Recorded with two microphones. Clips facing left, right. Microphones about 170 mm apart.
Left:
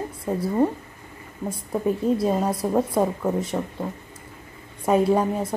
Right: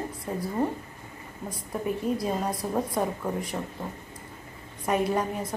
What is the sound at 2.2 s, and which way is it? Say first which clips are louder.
A woman's voice: left 6 dB; 25° left (ahead or behind).